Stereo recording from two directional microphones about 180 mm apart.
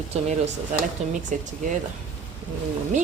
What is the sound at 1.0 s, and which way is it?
Speech, 40° right (ahead or behind).